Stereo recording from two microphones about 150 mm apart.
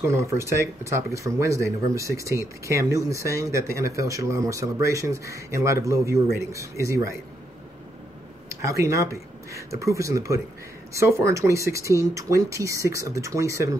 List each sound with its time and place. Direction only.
0.0 s speech: 20° right (ahead or behind)
8.5 s speech: 20° right (ahead or behind)